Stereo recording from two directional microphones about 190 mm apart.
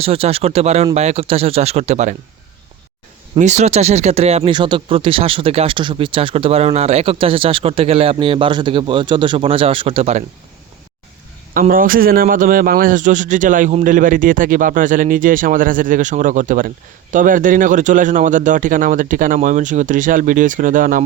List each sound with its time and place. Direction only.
0.0 s speech: 30° right (ahead or behind)
3.3 s speech: 35° right (ahead or behind)
11.5 s speech: 45° right (ahead or behind)